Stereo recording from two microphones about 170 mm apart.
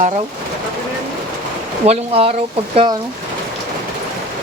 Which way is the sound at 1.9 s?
35° right (ahead or behind).